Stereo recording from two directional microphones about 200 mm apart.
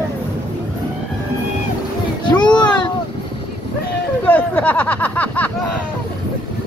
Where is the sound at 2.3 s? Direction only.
20° left (ahead or behind).